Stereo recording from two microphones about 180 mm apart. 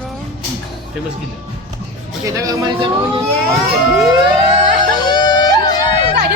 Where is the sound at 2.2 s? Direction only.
20° right (ahead or behind).